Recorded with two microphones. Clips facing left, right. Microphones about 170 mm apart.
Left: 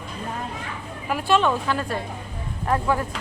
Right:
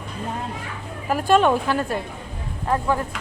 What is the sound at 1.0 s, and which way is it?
Speech, 45° right (ahead or behind).